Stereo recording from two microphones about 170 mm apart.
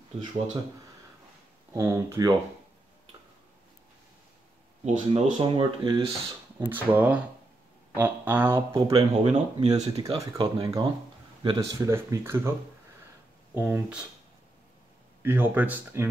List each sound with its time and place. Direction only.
1.7 s speech: 15° right (ahead or behind)
4.8 s speech: 35° right (ahead or behind)
6.6 s speech: 10° right (ahead or behind)
8.9 s speech: 35° right (ahead or behind); by 12.5 s 15° right (ahead or behind)
13.6 s speech: 10° right (ahead or behind)
15.2 s speech: 10° right (ahead or behind)